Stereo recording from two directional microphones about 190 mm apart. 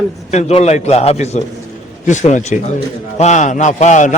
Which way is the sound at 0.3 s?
35° left (ahead or behind).